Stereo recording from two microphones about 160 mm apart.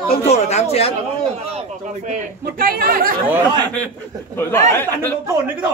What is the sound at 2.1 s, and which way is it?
Speech, 60° right (ahead or behind).